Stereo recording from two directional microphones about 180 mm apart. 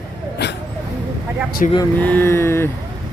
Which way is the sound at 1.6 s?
45° left (ahead or behind).